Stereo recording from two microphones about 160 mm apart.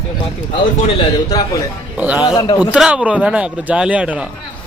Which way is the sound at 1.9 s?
10° right (ahead or behind).